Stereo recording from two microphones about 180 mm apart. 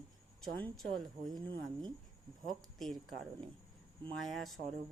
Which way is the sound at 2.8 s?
Centre (ahead or behind).